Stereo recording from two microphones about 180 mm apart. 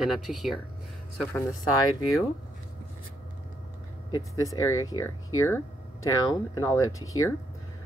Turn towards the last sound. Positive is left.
turn(degrees=20)  # may be behind; listen again after turning